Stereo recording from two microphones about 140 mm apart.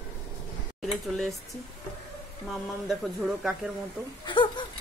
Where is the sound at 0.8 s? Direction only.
Centre (ahead or behind).